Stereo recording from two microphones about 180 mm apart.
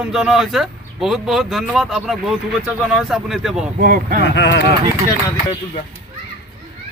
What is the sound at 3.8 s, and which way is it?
Speech, 55° right (ahead or behind).